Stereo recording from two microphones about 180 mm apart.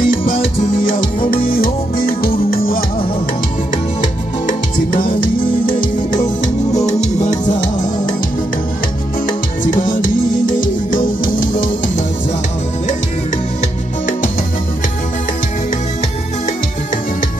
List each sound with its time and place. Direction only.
0.0 s music: 45° left (ahead or behind)
9.7 s music: 45° left (ahead or behind)